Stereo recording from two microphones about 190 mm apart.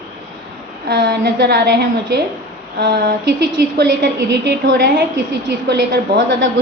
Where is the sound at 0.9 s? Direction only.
60° right (ahead or behind).